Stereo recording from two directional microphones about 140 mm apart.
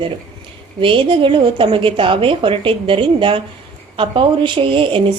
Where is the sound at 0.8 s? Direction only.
40° right (ahead or behind).